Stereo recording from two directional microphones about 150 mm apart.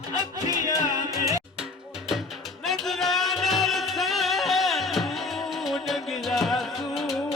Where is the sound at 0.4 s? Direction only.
25° right (ahead or behind).